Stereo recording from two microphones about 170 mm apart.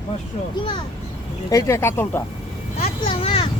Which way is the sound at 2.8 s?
35° left (ahead or behind).